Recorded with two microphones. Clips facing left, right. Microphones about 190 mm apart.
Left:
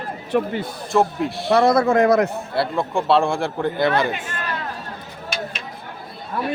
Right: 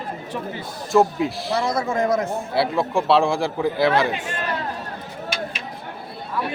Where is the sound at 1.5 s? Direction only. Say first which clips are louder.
Left 10 dB; 65° left (ahead or behind).